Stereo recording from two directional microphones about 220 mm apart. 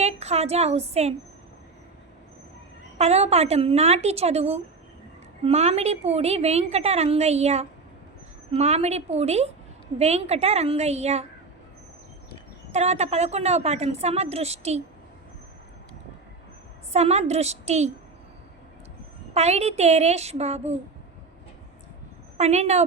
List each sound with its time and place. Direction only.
0.0 s a woman's voice: 30° right (ahead or behind)
3.0 s a woman's voice: 30° right (ahead or behind)
12.7 s a woman's voice: 30° right (ahead or behind)
16.9 s a woman's voice: 30° right (ahead or behind)
19.3 s a woman's voice: 30° right (ahead or behind)
22.4 s a woman's voice: 30° right (ahead or behind)